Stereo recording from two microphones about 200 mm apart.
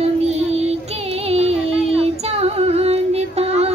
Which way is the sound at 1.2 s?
30° right (ahead or behind).